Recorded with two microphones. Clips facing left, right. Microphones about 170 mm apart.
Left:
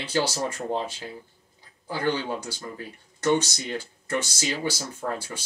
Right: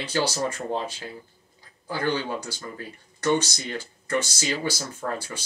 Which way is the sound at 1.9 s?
20° left (ahead or behind).